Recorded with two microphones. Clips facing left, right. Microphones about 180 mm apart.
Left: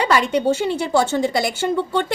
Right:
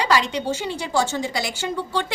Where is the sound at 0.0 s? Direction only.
55° left (ahead or behind).